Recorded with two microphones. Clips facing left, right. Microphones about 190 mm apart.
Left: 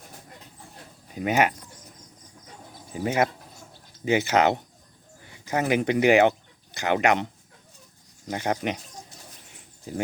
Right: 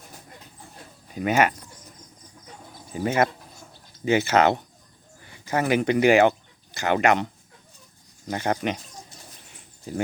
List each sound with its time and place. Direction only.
1.1 s speech: 15° left (ahead or behind)
2.9 s speech: 15° left (ahead or behind)
8.3 s speech: 15° left (ahead or behind)